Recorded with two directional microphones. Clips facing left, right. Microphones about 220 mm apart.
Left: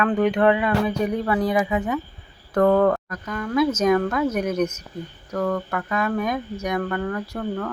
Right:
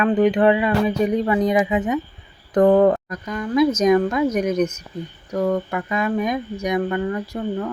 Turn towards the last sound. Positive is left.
turn(degrees=-15)  # may be behind; listen again after turning